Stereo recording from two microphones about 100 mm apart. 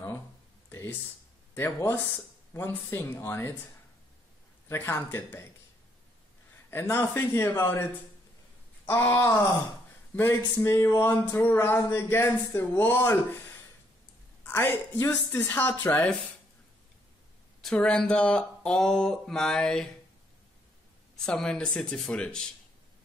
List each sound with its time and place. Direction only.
0.7 s a sound: 25° left (ahead or behind)
1.5 s speech: 20° left (ahead or behind)
4.6 s speech: 25° left (ahead or behind)
6.7 s speech: 25° left (ahead or behind)
14.4 s a sound: 20° left (ahead or behind)
15.3 s speech: 20° left (ahead or behind)
17.6 s speech: 5° left (ahead or behind)
21.3 s speech: 10° left (ahead or behind)